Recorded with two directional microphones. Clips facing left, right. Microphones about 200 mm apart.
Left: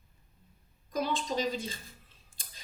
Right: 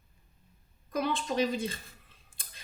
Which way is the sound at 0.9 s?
55° right (ahead or behind).